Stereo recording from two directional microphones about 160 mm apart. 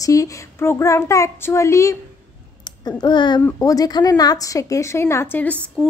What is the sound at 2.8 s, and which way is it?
A woman's voice, 30° left (ahead or behind).